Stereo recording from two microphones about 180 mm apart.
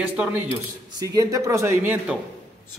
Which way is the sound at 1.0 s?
20° right (ahead or behind).